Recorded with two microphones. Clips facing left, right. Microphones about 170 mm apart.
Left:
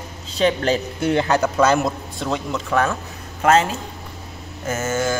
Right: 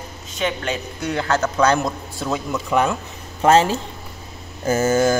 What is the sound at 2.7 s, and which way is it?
Speech, 15° right (ahead or behind).